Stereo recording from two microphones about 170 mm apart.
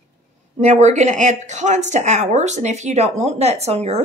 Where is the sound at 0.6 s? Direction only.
45° right (ahead or behind).